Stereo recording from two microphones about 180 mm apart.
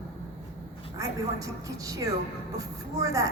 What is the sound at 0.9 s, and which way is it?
A woman's voice, 20° right (ahead or behind).